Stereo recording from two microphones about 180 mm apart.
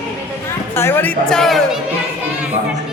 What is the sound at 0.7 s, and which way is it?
A woman's voice, 15° left (ahead or behind).